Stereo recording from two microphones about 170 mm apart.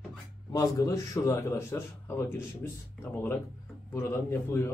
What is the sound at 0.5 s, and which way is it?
Speech, 20° left (ahead or behind).